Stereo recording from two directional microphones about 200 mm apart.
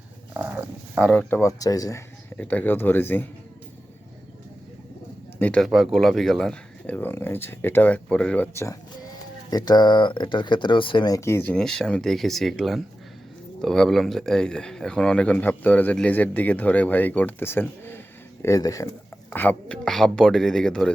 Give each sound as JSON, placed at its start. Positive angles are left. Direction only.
{"t": 0.3, "sound": "a sound", "side_deg": -10}
{"t": 1.4, "sound": "speech", "side_deg": 15}
{"t": 5.4, "sound": "speech", "side_deg": 5}